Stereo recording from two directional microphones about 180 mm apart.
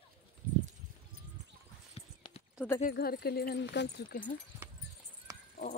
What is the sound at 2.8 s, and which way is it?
Speech, 55° left (ahead or behind).